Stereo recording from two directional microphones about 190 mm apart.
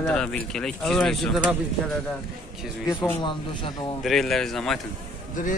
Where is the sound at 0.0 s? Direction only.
5° left (ahead or behind).